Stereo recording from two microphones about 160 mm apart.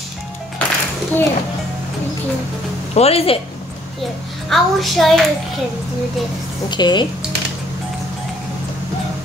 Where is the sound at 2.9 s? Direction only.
40° left (ahead or behind).